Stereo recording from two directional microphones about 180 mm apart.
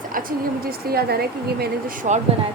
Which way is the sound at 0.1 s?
50° right (ahead or behind).